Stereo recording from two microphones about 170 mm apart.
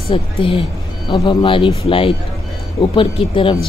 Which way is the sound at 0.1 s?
30° left (ahead or behind).